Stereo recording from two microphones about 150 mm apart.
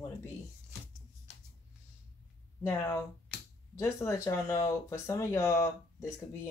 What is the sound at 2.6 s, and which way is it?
Speech, 20° left (ahead or behind).